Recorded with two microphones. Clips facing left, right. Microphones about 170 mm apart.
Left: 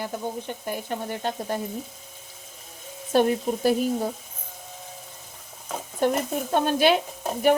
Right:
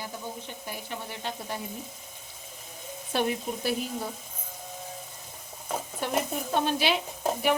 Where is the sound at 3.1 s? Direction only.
45° left (ahead or behind).